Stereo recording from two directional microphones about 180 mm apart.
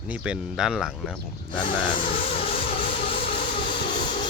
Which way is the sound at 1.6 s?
30° left (ahead or behind).